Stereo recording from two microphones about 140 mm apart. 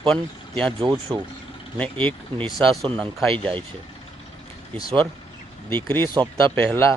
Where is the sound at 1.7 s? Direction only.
10° left (ahead or behind).